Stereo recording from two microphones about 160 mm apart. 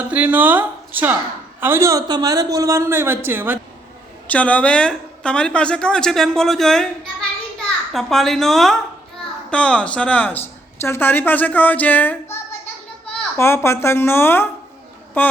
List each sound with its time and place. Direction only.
0.1 s a man's voice: 10° right (ahead or behind)
4.3 s a woman's voice: 10° left (ahead or behind)